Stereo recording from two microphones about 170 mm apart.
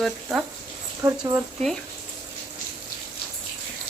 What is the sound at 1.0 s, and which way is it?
Speech, 15° right (ahead or behind).